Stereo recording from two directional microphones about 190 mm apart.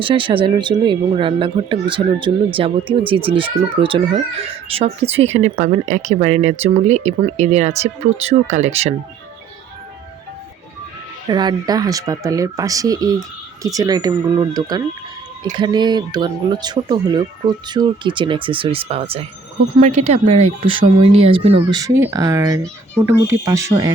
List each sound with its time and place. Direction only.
0.0 s speech: 25° right (ahead or behind)
11.3 s speech: 20° right (ahead or behind)